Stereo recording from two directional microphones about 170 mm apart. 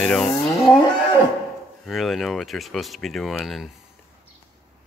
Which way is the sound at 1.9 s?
Centre (ahead or behind).